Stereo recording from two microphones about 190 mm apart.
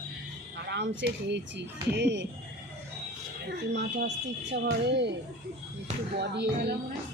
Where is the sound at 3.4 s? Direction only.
65° right (ahead or behind).